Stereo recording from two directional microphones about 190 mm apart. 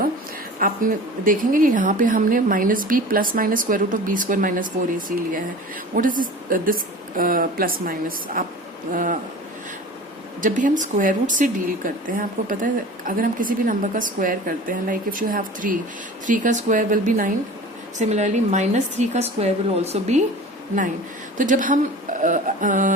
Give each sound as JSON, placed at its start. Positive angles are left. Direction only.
{"t": 0.6, "sound": "speech", "side_deg": -45}
{"t": 10.4, "sound": "a woman's voice", "side_deg": -45}
{"t": 21.3, "sound": "speech", "side_deg": -45}